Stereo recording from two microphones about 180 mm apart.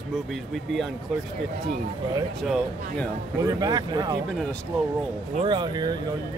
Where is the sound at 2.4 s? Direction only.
Centre (ahead or behind).